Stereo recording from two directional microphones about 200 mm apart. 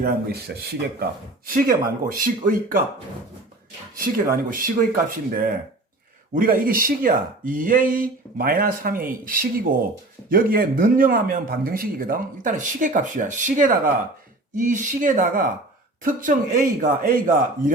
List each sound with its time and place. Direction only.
0.0 s speech: 50° right (ahead or behind)
4.0 s speech: 45° right (ahead or behind)